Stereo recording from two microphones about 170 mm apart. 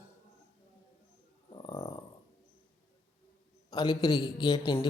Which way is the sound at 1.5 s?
25° left (ahead or behind).